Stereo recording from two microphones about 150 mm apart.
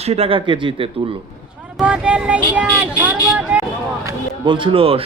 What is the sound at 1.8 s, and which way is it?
Speech, 5° right (ahead or behind).